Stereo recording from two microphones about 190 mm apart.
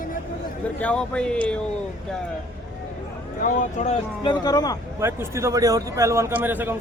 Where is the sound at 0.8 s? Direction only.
5° left (ahead or behind).